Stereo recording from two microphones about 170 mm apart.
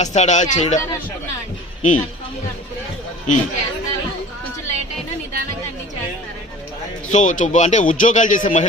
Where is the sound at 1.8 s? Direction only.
45° left (ahead or behind).